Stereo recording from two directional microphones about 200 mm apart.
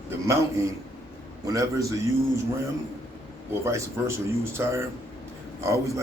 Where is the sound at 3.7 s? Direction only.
15° right (ahead or behind).